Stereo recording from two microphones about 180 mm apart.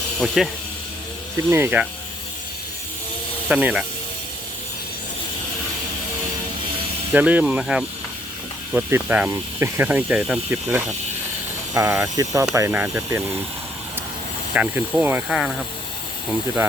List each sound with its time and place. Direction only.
0.2 s speech: centre (ahead or behind)
1.4 s speech: 15° right (ahead or behind)
3.5 s speech: 5° right (ahead or behind)
7.1 s speech: 10° right (ahead or behind)
14.5 s speech: 10° right (ahead or behind)